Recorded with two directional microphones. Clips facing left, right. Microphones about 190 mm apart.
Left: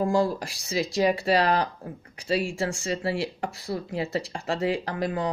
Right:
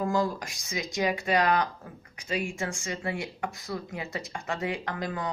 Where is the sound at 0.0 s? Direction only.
30° left (ahead or behind).